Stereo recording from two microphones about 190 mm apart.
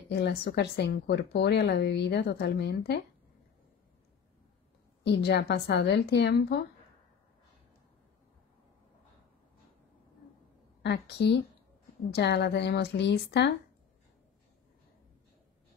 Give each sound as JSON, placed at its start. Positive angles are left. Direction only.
{"t": 0.1, "sound": "speech", "side_deg": 60}
{"t": 5.0, "sound": "speech", "side_deg": 60}
{"t": 10.8, "sound": "speech", "side_deg": 65}